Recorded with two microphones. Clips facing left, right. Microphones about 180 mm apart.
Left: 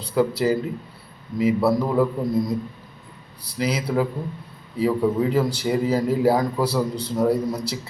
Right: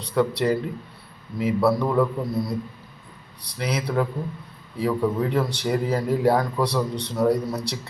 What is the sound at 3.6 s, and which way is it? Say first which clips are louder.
A man's voice: left 2 dB; 5° left (ahead or behind).